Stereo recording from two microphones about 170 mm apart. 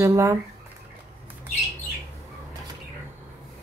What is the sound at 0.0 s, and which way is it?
Speech, 15° right (ahead or behind).